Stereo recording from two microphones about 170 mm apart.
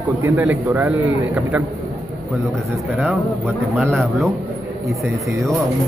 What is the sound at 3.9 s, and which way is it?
Speech, centre (ahead or behind).